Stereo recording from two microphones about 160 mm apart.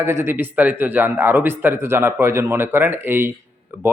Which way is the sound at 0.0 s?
15° right (ahead or behind).